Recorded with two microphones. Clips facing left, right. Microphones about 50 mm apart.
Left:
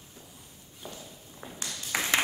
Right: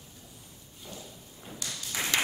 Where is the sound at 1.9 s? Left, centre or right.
Left.